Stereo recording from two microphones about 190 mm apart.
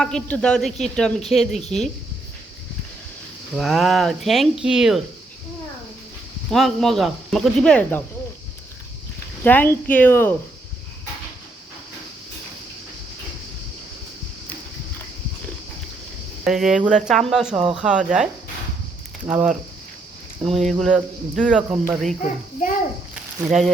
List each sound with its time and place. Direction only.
0.0 s speech: 5° left (ahead or behind)
3.5 s speech: centre (ahead or behind)
6.5 s speech: centre (ahead or behind)
9.4 s speech: 10° left (ahead or behind)
16.4 s speech: centre (ahead or behind)
19.3 s speech: 5° right (ahead or behind)
20.4 s speech: 30° right (ahead or behind)
20.7 s speech: centre (ahead or behind)
23.1 s a sound: 5° right (ahead or behind)